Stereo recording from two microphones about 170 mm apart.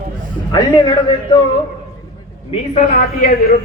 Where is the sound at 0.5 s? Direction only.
25° left (ahead or behind).